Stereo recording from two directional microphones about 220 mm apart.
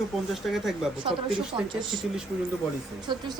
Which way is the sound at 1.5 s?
20° right (ahead or behind).